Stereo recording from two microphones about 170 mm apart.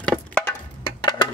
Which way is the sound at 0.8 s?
25° left (ahead or behind).